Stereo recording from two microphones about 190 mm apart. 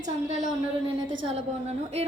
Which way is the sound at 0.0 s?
40° right (ahead or behind).